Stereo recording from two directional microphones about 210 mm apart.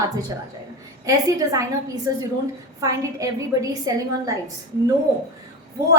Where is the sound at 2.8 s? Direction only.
15° right (ahead or behind).